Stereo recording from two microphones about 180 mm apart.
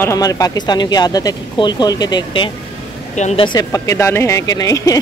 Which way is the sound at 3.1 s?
40° left (ahead or behind).